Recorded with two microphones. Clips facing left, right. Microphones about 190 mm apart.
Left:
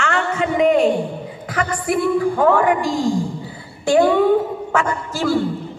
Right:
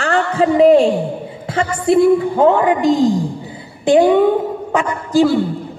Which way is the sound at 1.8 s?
25° right (ahead or behind).